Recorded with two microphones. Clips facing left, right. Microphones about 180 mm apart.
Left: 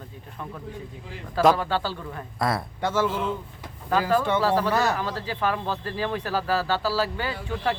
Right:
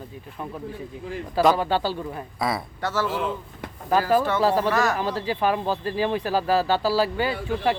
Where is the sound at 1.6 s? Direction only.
15° right (ahead or behind).